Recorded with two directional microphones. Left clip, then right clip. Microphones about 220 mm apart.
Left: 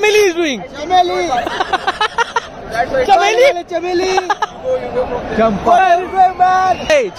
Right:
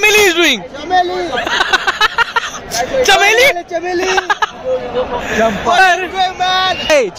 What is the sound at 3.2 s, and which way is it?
Speech, 10° left (ahead or behind).